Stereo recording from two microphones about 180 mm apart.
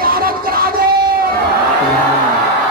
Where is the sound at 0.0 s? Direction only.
55° right (ahead or behind).